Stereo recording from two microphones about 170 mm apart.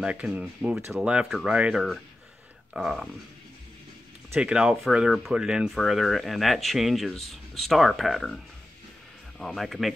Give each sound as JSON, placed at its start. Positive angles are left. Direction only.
{"t": 0.0, "sound": "speech", "side_deg": -5}
{"t": 4.3, "sound": "speech", "side_deg": -5}
{"t": 9.4, "sound": "speech", "side_deg": 0}